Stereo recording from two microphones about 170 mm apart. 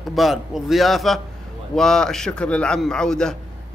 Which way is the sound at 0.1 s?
Centre (ahead or behind).